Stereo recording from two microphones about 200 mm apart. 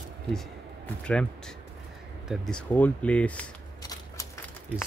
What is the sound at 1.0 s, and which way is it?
Speech, 5° left (ahead or behind).